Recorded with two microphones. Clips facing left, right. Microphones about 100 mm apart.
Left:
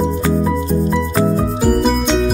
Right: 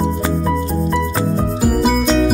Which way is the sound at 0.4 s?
Centre (ahead or behind).